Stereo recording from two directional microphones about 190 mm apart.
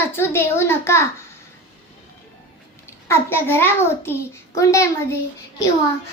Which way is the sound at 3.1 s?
10° left (ahead or behind).